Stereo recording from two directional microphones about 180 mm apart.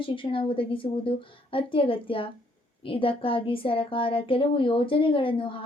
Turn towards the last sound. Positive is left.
turn(degrees=30)  # may be behind; listen again after turning